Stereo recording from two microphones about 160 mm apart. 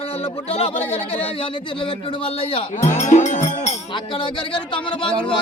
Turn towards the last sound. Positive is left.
turn(degrees=35)  # may be behind; listen again after turning